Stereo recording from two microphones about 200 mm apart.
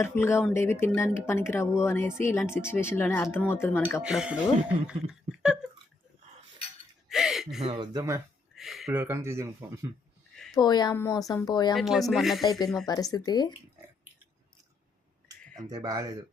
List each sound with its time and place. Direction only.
0.0 s speech: 10° left (ahead or behind)
4.0 s music: 5° right (ahead or behind)
4.9 s a sound: 5° right (ahead or behind)
7.1 s a sound: centre (ahead or behind)
7.6 s speech: 25° right (ahead or behind)
8.5 s speech: centre (ahead or behind)
10.3 s a sound: centre (ahead or behind)
10.6 s speech: 20° left (ahead or behind)
11.7 s music: centre (ahead or behind)
12.8 s speech: 20° left (ahead or behind)
15.7 s speech: 20° right (ahead or behind)